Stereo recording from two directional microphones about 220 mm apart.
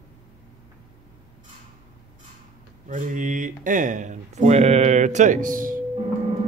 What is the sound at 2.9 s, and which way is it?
Speech, 35° right (ahead or behind).